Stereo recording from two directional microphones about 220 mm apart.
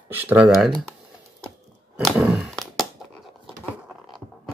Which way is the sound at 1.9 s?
5° right (ahead or behind).